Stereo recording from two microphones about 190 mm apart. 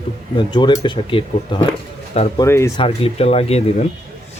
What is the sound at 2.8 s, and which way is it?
Speech, 30° left (ahead or behind).